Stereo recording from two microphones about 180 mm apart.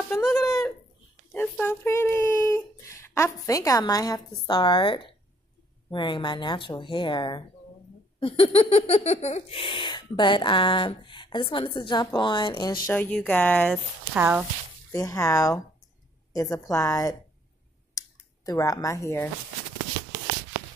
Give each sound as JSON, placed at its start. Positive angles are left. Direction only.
{"t": 0.2, "sound": "a sound", "side_deg": 0}
{"t": 1.3, "sound": "speech", "side_deg": 10}
{"t": 12.8, "sound": "speech", "side_deg": 10}
{"t": 14.1, "sound": "speech", "side_deg": -10}
{"t": 14.9, "sound": "speech", "side_deg": 20}
{"t": 17.9, "sound": "a sound", "side_deg": 20}